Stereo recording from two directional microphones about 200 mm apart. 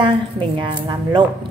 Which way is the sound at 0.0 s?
25° right (ahead or behind).